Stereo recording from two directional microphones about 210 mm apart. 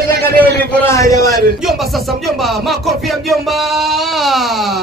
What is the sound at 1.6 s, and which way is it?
Speech, centre (ahead or behind).